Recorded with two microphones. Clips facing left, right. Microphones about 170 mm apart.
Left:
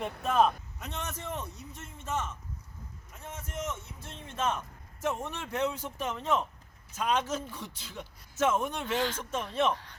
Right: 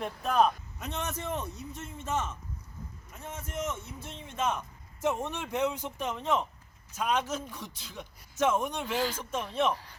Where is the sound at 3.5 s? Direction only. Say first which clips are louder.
Right 2 dB; 15° right (ahead or behind).